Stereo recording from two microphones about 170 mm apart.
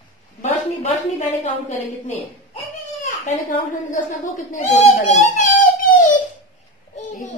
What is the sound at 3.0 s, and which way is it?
A woman's voice, 50° left (ahead or behind).